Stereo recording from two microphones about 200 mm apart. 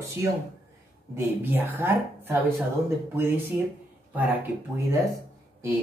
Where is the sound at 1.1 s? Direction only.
10° right (ahead or behind).